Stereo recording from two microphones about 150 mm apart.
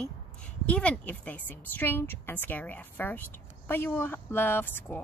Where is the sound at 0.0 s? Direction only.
5° left (ahead or behind).